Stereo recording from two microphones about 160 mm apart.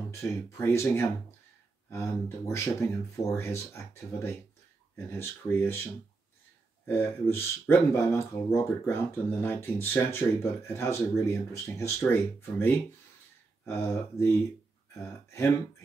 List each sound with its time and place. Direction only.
0.1 s speech: 20° left (ahead or behind)
6.9 s speech: 15° left (ahead or behind)